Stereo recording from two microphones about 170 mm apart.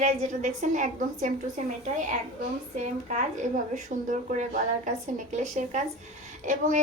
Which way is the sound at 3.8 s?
45° right (ahead or behind).